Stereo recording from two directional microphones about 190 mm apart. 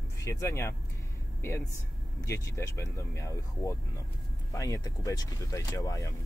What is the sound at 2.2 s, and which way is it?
Speech, 15° left (ahead or behind).